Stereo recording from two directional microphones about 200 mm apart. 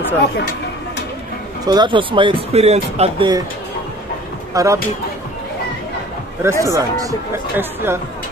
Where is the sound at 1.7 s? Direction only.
25° right (ahead or behind).